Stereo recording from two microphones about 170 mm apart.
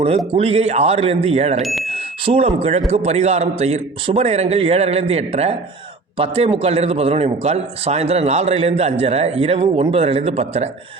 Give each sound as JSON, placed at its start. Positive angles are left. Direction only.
{"t": 0.3, "sound": "a man's voice", "side_deg": -35}